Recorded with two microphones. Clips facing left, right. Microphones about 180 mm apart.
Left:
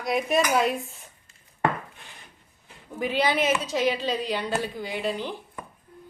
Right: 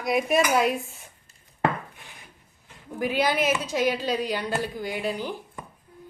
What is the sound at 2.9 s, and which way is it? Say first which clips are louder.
Speech: even; 5° right (ahead or behind).